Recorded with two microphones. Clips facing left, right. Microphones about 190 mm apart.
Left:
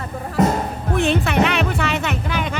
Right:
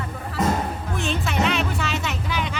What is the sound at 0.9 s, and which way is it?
Speech, 60° left (ahead or behind).